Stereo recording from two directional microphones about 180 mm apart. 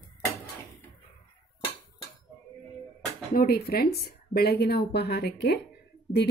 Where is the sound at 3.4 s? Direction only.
60° left (ahead or behind).